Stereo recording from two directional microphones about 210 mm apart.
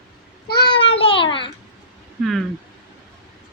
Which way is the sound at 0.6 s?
25° left (ahead or behind).